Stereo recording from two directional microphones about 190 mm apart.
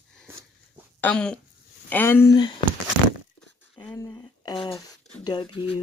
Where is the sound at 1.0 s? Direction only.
5° left (ahead or behind).